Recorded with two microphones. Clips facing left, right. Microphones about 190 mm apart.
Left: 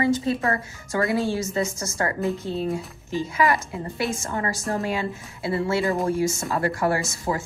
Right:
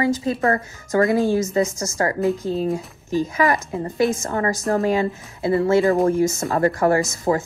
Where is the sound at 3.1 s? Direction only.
40° right (ahead or behind).